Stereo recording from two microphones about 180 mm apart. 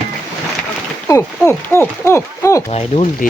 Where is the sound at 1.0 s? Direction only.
15° left (ahead or behind).